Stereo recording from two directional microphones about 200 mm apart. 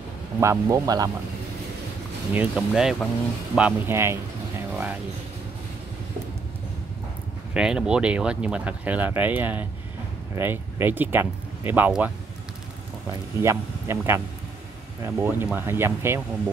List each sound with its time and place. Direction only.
0.4 s speech: 15° right (ahead or behind)
2.3 s speech: 5° right (ahead or behind)
7.5 s speech: 5° right (ahead or behind)
13.4 s speech: 15° right (ahead or behind)